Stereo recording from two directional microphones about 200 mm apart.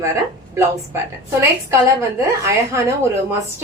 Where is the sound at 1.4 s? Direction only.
15° right (ahead or behind).